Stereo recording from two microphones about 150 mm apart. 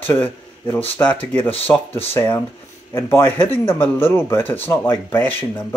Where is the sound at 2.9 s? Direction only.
15° left (ahead or behind).